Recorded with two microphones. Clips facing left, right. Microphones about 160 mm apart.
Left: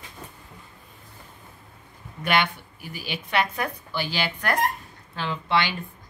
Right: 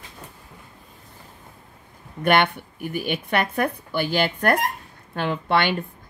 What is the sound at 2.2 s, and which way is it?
A woman's voice, 55° right (ahead or behind).